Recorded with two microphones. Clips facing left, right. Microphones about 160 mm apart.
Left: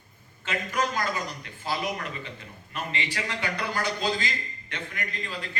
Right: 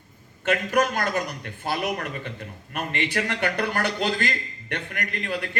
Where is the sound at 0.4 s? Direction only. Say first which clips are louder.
Right 7 dB; 60° right (ahead or behind).